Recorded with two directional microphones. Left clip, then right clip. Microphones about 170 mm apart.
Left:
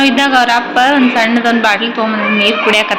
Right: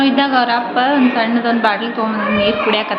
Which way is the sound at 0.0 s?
15° left (ahead or behind).